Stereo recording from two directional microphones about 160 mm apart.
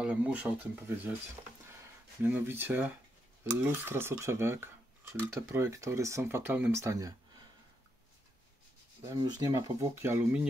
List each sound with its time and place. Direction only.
0.0 s speech: 10° right (ahead or behind)
2.2 s speech: 10° right (ahead or behind)
9.0 s speech: 25° right (ahead or behind)